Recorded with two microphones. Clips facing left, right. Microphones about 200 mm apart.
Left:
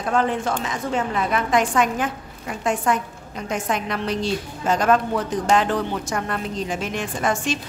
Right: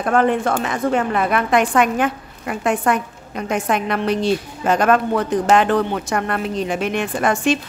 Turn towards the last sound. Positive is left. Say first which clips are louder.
# right 5 dB
turn(degrees=-60)  # may be behind; listen again after turning